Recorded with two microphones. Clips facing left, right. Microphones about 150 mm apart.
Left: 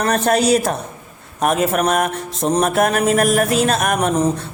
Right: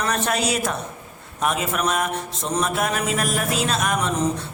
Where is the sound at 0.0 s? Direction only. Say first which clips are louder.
Left 7 dB; 45° left (ahead or behind).